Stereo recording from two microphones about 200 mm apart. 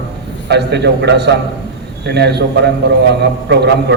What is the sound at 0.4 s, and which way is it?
A man's voice, 60° right (ahead or behind).